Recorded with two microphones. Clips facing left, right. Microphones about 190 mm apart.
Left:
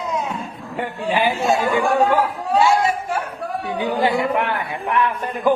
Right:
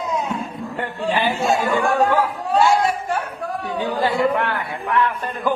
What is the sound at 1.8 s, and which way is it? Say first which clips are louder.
Speech: left 1 dB; 10° left (ahead or behind).